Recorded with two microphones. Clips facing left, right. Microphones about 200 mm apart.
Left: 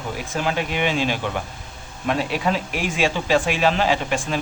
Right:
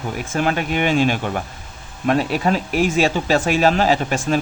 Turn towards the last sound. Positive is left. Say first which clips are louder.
# right 4 dB
turn(degrees=-40)  # may be behind; listen again after turning